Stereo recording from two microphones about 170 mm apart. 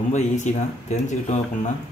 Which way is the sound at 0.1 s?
45° left (ahead or behind).